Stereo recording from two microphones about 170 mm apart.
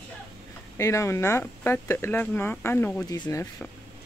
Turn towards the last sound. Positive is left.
turn(degrees=15)  # may be behind; listen again after turning